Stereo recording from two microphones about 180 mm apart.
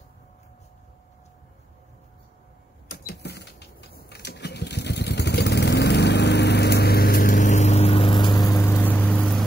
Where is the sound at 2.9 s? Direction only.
60° left (ahead or behind).